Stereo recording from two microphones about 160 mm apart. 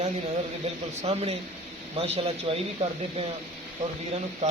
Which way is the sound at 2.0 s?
35° right (ahead or behind).